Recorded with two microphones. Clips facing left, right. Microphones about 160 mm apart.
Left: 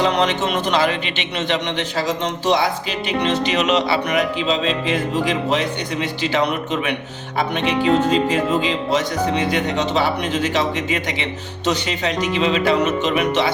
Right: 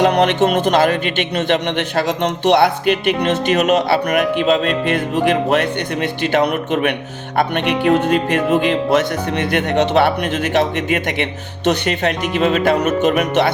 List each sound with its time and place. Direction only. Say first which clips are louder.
0.0 s speech: right 5 dB; 55° right (ahead or behind)